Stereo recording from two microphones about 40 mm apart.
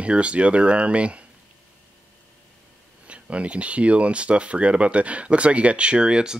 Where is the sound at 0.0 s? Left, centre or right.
Right.